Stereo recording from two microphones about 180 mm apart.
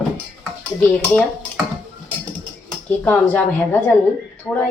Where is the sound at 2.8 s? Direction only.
10° left (ahead or behind).